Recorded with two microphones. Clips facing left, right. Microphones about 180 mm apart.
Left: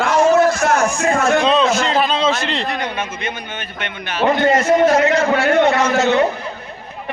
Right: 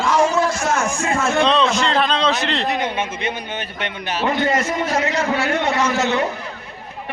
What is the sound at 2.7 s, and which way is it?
Speech, 25° right (ahead or behind).